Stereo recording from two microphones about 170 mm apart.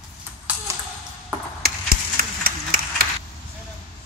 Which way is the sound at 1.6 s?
60° right (ahead or behind).